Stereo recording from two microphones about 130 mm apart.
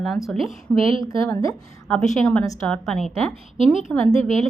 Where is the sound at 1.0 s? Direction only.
25° left (ahead or behind).